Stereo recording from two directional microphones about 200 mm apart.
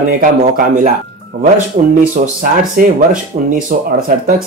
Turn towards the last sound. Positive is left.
turn(degrees=-40)  # may be behind; listen again after turning